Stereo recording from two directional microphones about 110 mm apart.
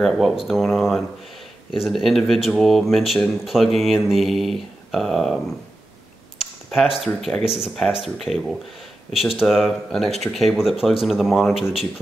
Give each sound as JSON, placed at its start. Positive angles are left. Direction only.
{"t": 0.0, "sound": "speech", "side_deg": 0}
{"t": 6.4, "sound": "a sound", "side_deg": 0}
{"t": 7.1, "sound": "speech", "side_deg": 5}